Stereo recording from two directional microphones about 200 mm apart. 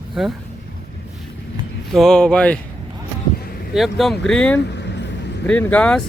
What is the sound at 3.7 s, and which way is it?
Speech, centre (ahead or behind).